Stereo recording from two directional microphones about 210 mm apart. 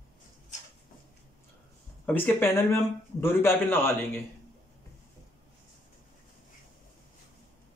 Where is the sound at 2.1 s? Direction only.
10° left (ahead or behind).